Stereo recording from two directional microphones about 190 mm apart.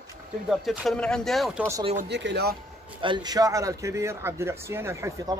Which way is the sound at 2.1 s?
65° right (ahead or behind).